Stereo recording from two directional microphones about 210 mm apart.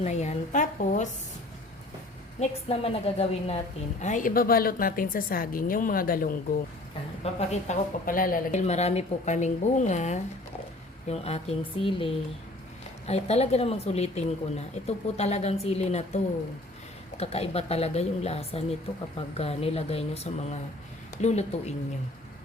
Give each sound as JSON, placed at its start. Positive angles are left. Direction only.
{"t": 0.0, "sound": "a woman's voice", "side_deg": 30}
{"t": 2.4, "sound": "speech", "side_deg": 30}
{"t": 7.3, "sound": "a woman's voice", "side_deg": 35}